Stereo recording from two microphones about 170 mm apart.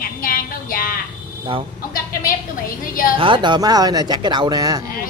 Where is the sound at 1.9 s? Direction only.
55° left (ahead or behind).